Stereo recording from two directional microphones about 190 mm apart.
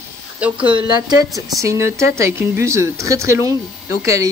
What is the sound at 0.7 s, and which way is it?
Speech, 20° right (ahead or behind).